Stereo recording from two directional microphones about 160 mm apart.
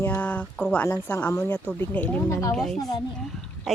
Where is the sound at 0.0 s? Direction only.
10° left (ahead or behind).